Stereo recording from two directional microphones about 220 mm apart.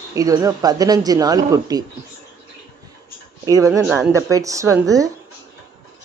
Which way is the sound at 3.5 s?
15° right (ahead or behind).